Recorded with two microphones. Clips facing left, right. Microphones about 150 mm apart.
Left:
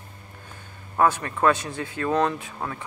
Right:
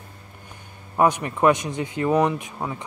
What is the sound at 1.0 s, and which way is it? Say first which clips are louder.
Speech: right 2 dB; 15° right (ahead or behind).